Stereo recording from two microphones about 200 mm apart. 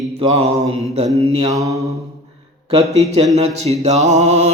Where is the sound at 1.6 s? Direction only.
15° right (ahead or behind).